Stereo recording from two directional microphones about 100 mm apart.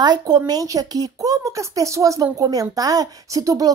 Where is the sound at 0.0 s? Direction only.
45° right (ahead or behind).